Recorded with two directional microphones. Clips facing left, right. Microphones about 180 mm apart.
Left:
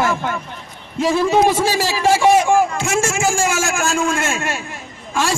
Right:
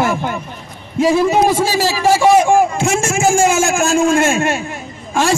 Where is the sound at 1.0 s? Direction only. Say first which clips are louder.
Right 2 dB; 10° right (ahead or behind).